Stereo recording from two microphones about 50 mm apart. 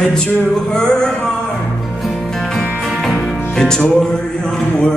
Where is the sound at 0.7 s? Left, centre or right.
Centre.